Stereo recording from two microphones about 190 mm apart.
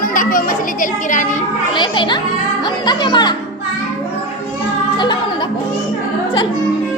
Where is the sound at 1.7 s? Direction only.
25° left (ahead or behind).